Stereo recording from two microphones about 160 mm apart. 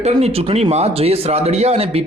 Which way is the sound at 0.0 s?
40° right (ahead or behind).